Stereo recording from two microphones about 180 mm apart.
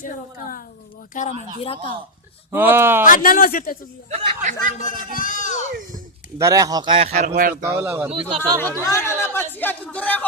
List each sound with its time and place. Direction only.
0.0 s speech: 50° left (ahead or behind)
1.6 s speech: 30° left (ahead or behind)
2.5 s speech: 10° right (ahead or behind)
3.1 s speech: 50° left (ahead or behind)
4.1 s speech: 35° right (ahead or behind)
4.8 s speech: 50° left (ahead or behind)
6.4 s speech: 20° right (ahead or behind)
7.1 s speech: 50° right (ahead or behind)
7.5 s speech: 10° right (ahead or behind)
8.4 s speech: 10° left (ahead or behind)